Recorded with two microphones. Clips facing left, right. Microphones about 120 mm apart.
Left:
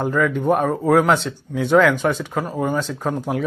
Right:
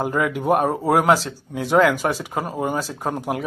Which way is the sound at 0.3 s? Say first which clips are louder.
Left 1 dB; 10° right (ahead or behind).